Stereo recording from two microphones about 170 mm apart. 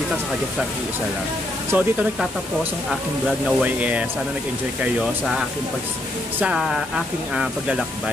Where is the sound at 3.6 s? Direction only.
10° right (ahead or behind).